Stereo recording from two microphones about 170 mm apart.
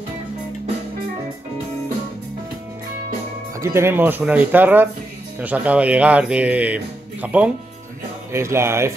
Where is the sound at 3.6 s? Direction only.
15° right (ahead or behind).